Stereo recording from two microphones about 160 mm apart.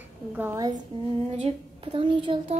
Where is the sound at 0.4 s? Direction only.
15° right (ahead or behind).